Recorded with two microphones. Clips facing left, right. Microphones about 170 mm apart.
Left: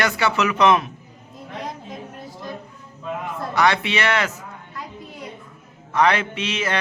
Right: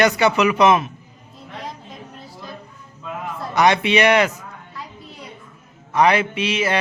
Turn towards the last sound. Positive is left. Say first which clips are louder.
# right 4 dB
turn(degrees=-10)  # may be behind; listen again after turning